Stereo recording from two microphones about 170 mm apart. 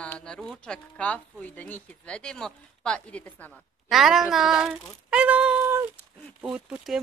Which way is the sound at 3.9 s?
Centre (ahead or behind).